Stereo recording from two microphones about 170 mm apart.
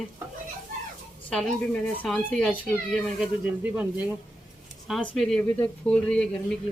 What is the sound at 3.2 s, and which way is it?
Speech, 10° right (ahead or behind).